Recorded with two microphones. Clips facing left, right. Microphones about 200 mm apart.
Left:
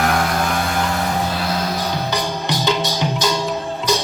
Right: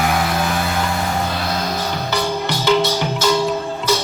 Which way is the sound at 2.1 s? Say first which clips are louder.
Right 1 dB; 15° left (ahead or behind).